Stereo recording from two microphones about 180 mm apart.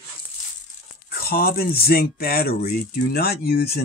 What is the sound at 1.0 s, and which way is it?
Speech, 60° left (ahead or behind).